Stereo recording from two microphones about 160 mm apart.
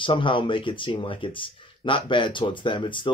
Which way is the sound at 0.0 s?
30° left (ahead or behind).